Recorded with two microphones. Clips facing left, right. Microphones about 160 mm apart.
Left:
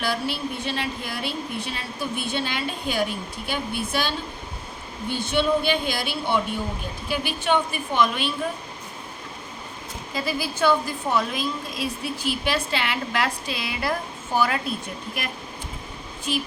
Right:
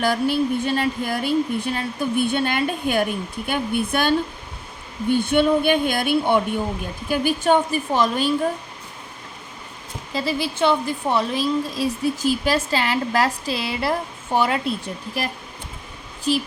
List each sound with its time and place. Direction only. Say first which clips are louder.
0.0 s speech: right 7 dB; 45° right (ahead or behind)
5.1 s a woman's voice: right 5 dB; 55° right (ahead or behind)
10.1 s a woman's voice: right 4 dB; 30° right (ahead or behind)